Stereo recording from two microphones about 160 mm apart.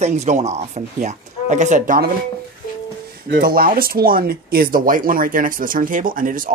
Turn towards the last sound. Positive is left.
turn(degrees=-60)  # may be behind; listen again after turning